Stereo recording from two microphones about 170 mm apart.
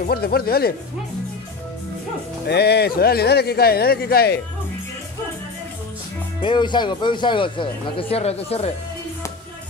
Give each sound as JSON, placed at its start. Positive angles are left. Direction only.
{"t": 0.0, "sound": "speech", "side_deg": 65}
{"t": 2.4, "sound": "speech", "side_deg": 75}
{"t": 6.4, "sound": "speech", "side_deg": 25}